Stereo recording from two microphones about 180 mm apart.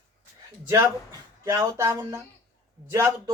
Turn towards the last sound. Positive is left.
turn(degrees=-15)  # may be behind; listen again after turning